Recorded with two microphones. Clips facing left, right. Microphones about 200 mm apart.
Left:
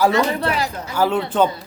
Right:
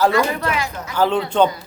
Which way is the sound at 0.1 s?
30° left (ahead or behind).